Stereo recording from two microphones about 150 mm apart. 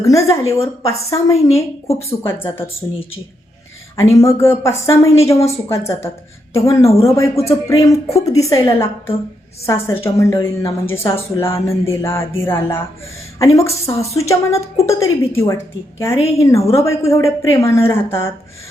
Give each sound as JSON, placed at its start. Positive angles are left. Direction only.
{"t": 0.0, "sound": "a woman's voice", "side_deg": 20}
{"t": 3.9, "sound": "a woman's voice", "side_deg": 20}